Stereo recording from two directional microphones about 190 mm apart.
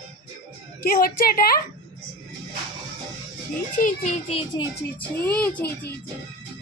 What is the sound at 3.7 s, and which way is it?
Speech, 40° left (ahead or behind).